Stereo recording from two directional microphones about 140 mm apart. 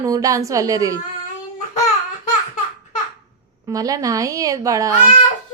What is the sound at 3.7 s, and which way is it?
A woman's voice, 25° right (ahead or behind).